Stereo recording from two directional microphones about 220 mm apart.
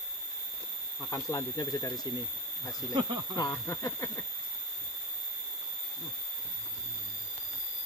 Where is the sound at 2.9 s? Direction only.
20° right (ahead or behind).